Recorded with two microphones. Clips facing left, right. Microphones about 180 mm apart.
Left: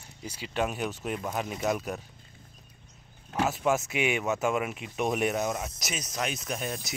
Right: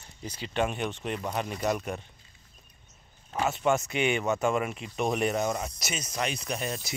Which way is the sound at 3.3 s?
Centre (ahead or behind).